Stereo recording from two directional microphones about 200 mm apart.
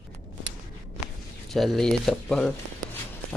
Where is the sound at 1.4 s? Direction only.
Centre (ahead or behind).